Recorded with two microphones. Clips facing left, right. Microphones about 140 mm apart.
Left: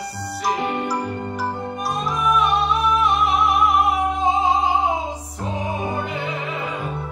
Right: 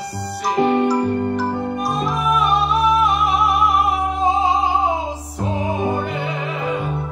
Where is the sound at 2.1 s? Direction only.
5° right (ahead or behind).